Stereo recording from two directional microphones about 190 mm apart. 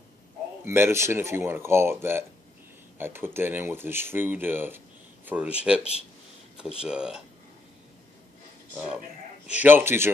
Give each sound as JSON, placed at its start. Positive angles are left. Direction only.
{"t": 0.7, "sound": "speech", "side_deg": -15}
{"t": 6.8, "sound": "speech", "side_deg": -5}
{"t": 8.7, "sound": "speech", "side_deg": -5}